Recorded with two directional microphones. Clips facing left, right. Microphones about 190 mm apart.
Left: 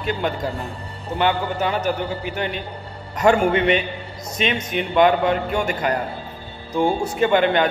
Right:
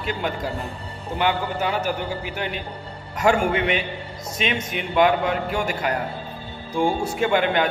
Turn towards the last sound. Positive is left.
turn(degrees=-5)  # may be behind; listen again after turning